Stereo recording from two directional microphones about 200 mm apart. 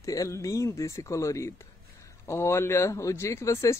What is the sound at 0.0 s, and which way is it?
Speech, 15° left (ahead or behind).